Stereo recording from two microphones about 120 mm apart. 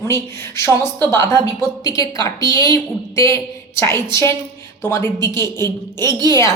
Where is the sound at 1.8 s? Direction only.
30° left (ahead or behind).